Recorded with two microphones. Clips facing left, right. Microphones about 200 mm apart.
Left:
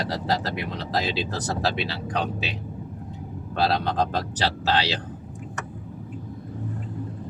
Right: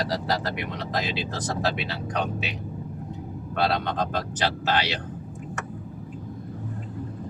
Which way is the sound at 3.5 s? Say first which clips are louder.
Left 2 dB; 30° left (ahead or behind).